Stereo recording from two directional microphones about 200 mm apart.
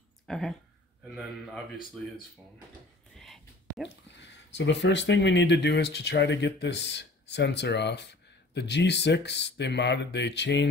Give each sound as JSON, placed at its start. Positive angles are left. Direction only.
{"t": 0.3, "sound": "a man's voice", "side_deg": 0}
{"t": 3.2, "sound": "whispering", "side_deg": 0}
{"t": 4.2, "sound": "speech", "side_deg": 60}